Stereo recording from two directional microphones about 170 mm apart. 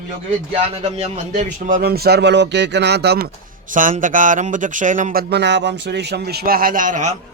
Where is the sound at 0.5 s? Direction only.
35° right (ahead or behind); by 3.2 s 75° right (ahead or behind).